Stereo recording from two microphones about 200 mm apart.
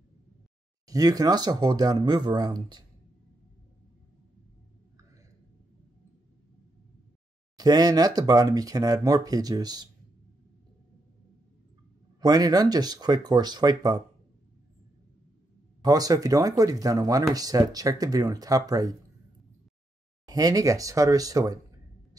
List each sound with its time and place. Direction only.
0.8 s speech: 20° right (ahead or behind)
7.5 s speech: 20° right (ahead or behind)
12.2 s speech: 20° right (ahead or behind)
15.8 s speech: 20° right (ahead or behind)
20.2 s speech: 20° right (ahead or behind)